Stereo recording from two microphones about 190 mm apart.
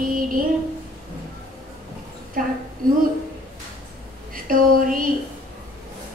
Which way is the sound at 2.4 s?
45° right (ahead or behind).